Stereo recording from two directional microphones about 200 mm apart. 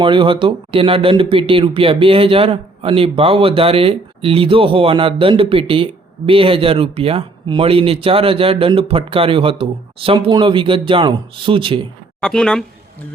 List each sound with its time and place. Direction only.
0.0 s speech: 25° right (ahead or behind)
12.2 s speech: 5° left (ahead or behind)